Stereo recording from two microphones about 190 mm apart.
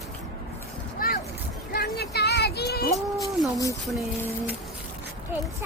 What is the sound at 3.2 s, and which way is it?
Speech, 15° left (ahead or behind).